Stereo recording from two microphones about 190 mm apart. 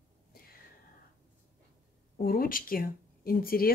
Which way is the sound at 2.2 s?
50° left (ahead or behind).